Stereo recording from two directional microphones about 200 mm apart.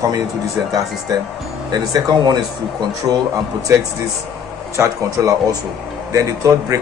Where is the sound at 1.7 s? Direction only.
20° right (ahead or behind).